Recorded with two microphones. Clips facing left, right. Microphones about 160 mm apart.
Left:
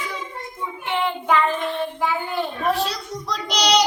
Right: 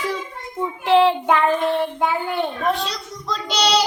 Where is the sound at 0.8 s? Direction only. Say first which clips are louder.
Right 10 dB; 90° right.